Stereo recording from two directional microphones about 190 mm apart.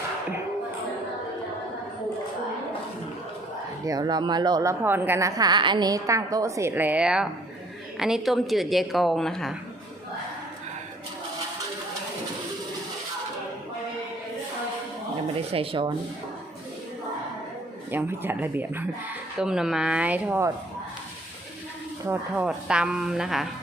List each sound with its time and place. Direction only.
3.8 s a woman's voice: 20° right (ahead or behind); by 9.6 s centre (ahead or behind)
15.5 s speech: 30° right (ahead or behind)
17.9 s a woman's voice: 10° right (ahead or behind)
22.0 s a woman's voice: 10° right (ahead or behind)